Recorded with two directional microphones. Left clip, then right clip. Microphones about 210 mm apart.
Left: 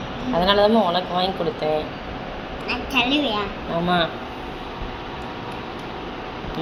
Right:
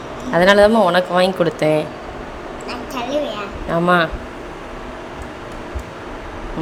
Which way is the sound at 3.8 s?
40° right (ahead or behind).